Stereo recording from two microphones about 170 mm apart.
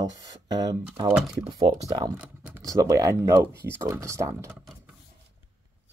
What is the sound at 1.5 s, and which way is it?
Speech, 25° right (ahead or behind).